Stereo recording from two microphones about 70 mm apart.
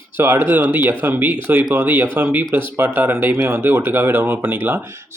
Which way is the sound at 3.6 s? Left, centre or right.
Right.